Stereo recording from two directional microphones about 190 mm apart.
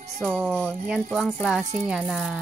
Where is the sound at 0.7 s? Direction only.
5° right (ahead or behind).